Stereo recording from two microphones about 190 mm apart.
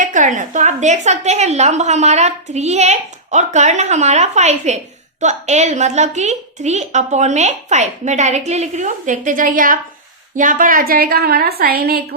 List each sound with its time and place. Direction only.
0.0 s a woman's voice: 40° right (ahead or behind)